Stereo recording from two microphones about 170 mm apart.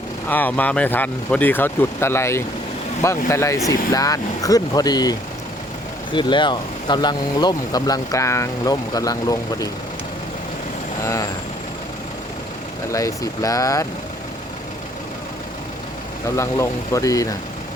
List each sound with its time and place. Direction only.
0.3 s speech: 10° left (ahead or behind)
11.0 s speech: 20° left (ahead or behind)
12.9 s speech: 20° left (ahead or behind)
16.3 s speech: 15° left (ahead or behind)